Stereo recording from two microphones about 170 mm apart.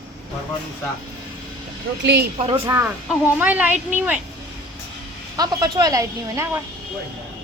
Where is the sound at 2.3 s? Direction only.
35° right (ahead or behind).